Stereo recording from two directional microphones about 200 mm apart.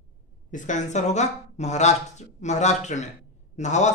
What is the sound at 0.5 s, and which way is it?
Speech, 40° left (ahead or behind).